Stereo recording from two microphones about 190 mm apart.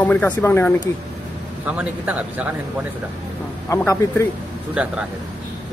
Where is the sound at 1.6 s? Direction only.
10° right (ahead or behind).